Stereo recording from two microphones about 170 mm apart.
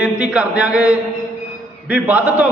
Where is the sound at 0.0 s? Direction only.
5° right (ahead or behind).